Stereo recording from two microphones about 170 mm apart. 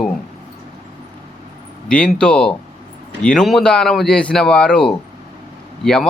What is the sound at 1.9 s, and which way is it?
Speech, 5° left (ahead or behind).